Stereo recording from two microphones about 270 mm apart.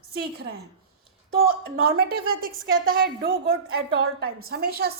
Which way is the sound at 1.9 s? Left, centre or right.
Right.